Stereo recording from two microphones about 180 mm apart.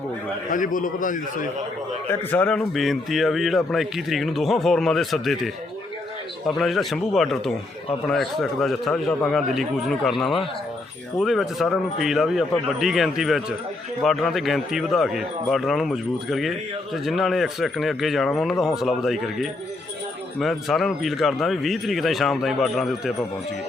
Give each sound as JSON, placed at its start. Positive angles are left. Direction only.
{"t": 0.5, "sound": "a man's voice", "side_deg": 45}
{"t": 2.0, "sound": "a man's voice", "side_deg": 10}
{"t": 6.6, "sound": "a man's voice", "side_deg": 0}